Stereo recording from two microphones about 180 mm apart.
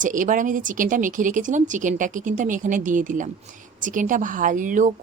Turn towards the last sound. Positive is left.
turn(degrees=-45)  # may be behind; listen again after turning